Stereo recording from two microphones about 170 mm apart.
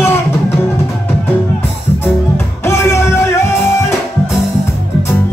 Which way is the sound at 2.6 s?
15° left (ahead or behind).